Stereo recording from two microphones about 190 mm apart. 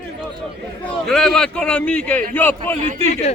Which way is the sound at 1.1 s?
Centre (ahead or behind).